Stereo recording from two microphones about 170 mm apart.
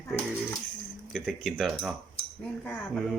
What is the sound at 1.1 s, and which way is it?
Speech, centre (ahead or behind).